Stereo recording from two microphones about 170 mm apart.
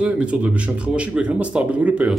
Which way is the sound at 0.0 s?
5° right (ahead or behind).